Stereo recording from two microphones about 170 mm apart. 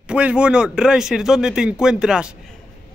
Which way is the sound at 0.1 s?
5° right (ahead or behind).